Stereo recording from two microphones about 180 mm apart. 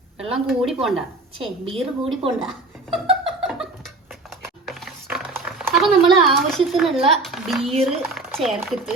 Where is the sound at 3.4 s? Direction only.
Centre (ahead or behind).